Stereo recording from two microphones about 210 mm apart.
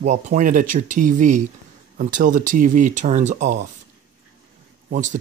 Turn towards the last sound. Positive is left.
turn(degrees=-35)  # may be behind; listen again after turning